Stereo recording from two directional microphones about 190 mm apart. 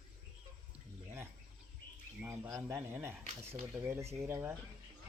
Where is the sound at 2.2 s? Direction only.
15° right (ahead or behind).